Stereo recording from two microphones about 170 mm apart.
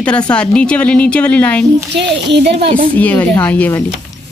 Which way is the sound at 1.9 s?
90° right.